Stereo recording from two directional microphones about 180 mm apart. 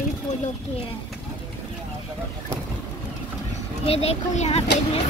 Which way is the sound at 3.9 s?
35° left (ahead or behind).